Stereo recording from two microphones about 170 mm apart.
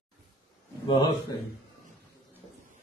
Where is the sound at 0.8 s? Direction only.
30° left (ahead or behind).